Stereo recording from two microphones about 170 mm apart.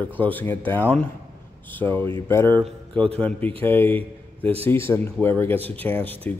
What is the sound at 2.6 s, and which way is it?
Speech, 35° right (ahead or behind).